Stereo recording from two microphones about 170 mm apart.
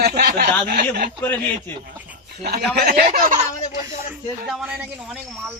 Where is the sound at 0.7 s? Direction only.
65° right (ahead or behind).